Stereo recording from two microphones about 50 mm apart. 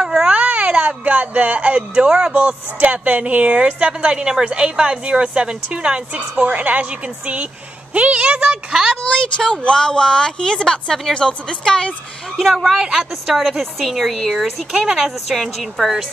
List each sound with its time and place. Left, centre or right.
0.0 s baby cry: centre
0.4 s speech: right
9.0 s speech: centre
12.4 s speech: centre
13.6 s speech: centre